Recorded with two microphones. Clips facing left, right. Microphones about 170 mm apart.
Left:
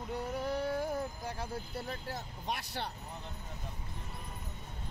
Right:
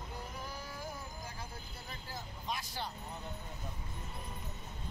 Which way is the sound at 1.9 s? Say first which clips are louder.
Left 6 dB; 65° left (ahead or behind).